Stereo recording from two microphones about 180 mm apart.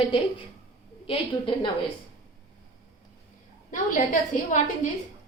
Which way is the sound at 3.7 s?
45° left (ahead or behind).